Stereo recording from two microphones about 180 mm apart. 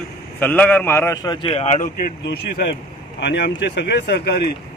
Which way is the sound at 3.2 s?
70° left (ahead or behind).